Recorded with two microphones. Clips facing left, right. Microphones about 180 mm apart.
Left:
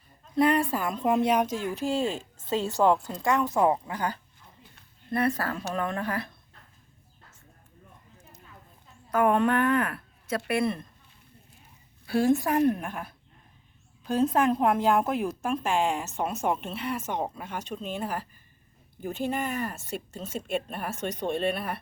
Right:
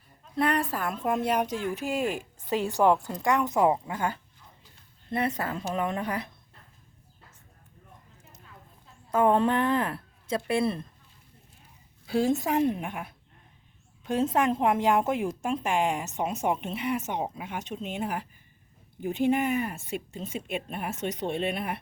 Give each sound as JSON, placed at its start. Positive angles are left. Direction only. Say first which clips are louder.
{"t": 0.3, "sound": "a woman's voice", "louder": "left 3 dB", "side_deg": 0}
{"t": 1.8, "sound": "a woman's voice", "louder": "left 1 dB", "side_deg": -15}
{"t": 9.0, "sound": "speech", "louder": "even", "side_deg": -25}
{"t": 12.0, "sound": "a woman's voice", "louder": "left 2 dB", "side_deg": -20}